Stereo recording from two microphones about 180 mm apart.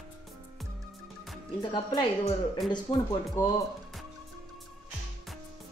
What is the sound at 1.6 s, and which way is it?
Speech, 25° left (ahead or behind).